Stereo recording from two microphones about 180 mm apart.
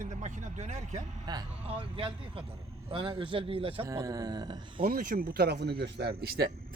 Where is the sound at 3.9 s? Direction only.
20° right (ahead or behind).